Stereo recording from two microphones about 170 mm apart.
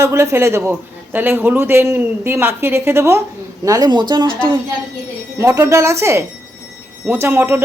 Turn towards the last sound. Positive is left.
turn(degrees=-15)  # may be behind; listen again after turning